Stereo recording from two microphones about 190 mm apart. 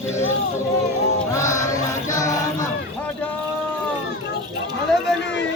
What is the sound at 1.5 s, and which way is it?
Music, 40° left (ahead or behind).